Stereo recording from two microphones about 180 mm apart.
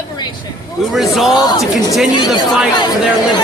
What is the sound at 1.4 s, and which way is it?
Speech, 20° left (ahead or behind).